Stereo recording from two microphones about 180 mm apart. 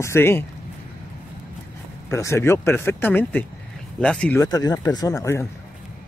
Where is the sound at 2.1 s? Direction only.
15° left (ahead or behind).